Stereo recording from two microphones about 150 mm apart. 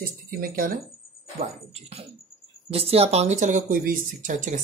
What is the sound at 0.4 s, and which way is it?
Speech, 75° right (ahead or behind).